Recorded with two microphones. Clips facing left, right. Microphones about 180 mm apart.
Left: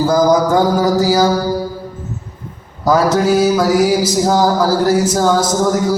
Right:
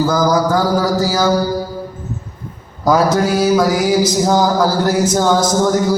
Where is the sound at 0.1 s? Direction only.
25° left (ahead or behind).